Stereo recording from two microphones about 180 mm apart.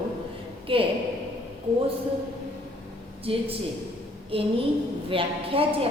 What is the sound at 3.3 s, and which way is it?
A woman's voice, 30° right (ahead or behind).